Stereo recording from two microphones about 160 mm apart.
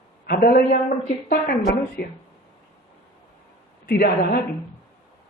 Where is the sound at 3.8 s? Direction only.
75° left (ahead or behind).